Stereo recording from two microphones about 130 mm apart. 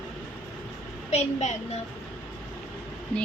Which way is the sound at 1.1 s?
60° left (ahead or behind).